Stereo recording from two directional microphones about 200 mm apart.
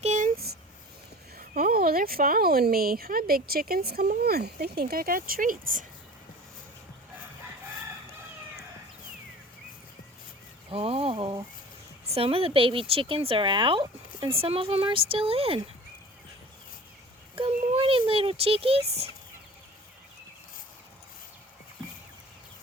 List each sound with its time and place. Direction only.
0.0 s a sound: 35° right (ahead or behind)
1.4 s speech: 45° right (ahead or behind)
10.7 s a woman's voice: 30° right (ahead or behind)
17.3 s a child's voice: 25° right (ahead or behind)